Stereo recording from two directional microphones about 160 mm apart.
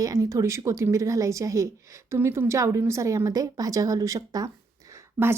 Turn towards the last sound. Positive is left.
turn(degrees=-15)  # may be behind; listen again after turning